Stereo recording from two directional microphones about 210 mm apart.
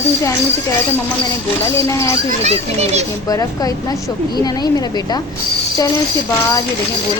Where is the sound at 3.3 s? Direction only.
15° left (ahead or behind).